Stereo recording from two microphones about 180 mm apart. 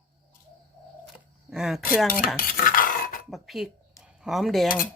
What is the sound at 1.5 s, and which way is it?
Cutlery, 5° right (ahead or behind).